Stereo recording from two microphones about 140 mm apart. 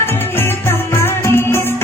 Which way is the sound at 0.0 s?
15° left (ahead or behind).